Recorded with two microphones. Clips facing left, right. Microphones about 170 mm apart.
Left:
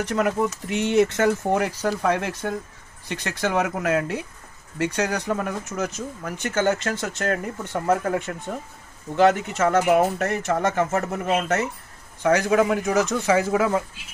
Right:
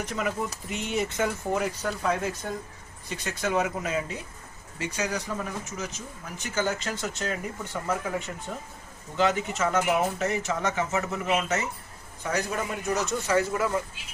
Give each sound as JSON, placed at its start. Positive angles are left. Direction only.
{"t": 0.0, "sound": "speech", "side_deg": 70}
{"t": 12.2, "sound": "speech", "side_deg": 90}